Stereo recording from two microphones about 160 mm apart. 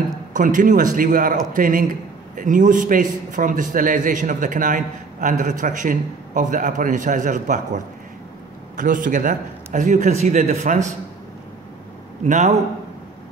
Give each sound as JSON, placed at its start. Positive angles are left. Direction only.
{"t": 0.3, "sound": "a man's voice", "side_deg": -55}
{"t": 12.3, "sound": "a man's voice", "side_deg": -50}